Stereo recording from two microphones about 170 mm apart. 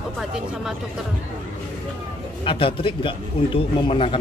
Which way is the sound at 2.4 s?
30° left (ahead or behind).